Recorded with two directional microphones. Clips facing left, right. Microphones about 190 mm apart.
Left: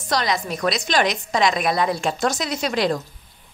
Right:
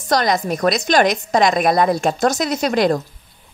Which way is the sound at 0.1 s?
45° right (ahead or behind).